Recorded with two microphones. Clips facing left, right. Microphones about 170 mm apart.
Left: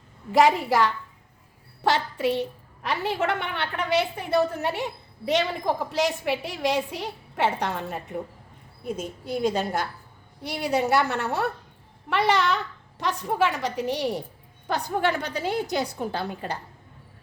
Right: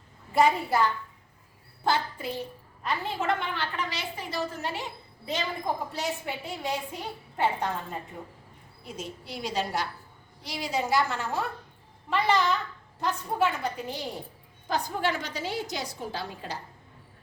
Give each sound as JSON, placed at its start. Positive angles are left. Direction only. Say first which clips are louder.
{"t": 0.3, "sound": "a woman's voice", "louder": "left 4 dB", "side_deg": 90}
{"t": 8.8, "sound": "a woman's voice", "louder": "left 7 dB", "side_deg": 50}
{"t": 10.4, "sound": "a woman's voice", "louder": "left 6 dB", "side_deg": 60}
{"t": 13.0, "sound": "a woman's voice", "louder": "left 3 dB", "side_deg": 85}
{"t": 14.7, "sound": "a woman's voice", "louder": "left 4 dB", "side_deg": 60}